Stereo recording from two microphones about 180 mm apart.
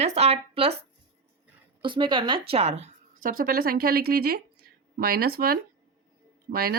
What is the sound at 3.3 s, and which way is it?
Speech, 50° right (ahead or behind).